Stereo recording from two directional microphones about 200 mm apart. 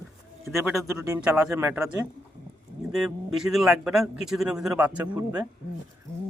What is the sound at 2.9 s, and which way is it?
A man's voice, centre (ahead or behind).